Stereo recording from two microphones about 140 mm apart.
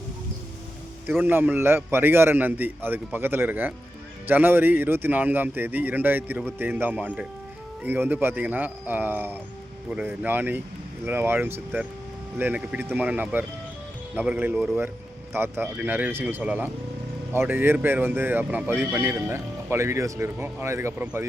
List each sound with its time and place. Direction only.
1.0 s speech: 15° right (ahead or behind)
15.3 s speech: 15° right (ahead or behind)